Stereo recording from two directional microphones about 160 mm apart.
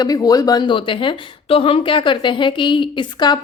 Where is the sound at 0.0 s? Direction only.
25° left (ahead or behind).